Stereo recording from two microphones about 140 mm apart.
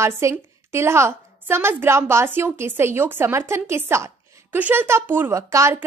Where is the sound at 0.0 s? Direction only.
20° right (ahead or behind).